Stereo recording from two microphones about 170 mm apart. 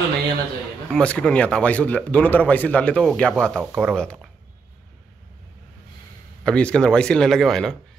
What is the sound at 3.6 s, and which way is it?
Speech, 10° right (ahead or behind).